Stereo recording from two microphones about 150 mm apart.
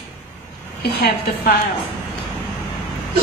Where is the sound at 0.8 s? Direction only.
90° left.